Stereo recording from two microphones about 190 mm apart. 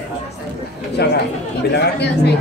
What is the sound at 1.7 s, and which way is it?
Speech, 60° left (ahead or behind).